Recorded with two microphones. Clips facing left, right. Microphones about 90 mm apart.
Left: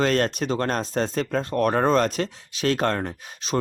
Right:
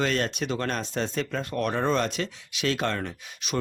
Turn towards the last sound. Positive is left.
turn(degrees=40)  # may be behind; listen again after turning